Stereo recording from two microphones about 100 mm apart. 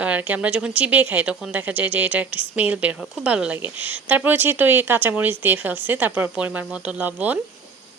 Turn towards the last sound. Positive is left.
turn(degrees=-15)  # may be behind; listen again after turning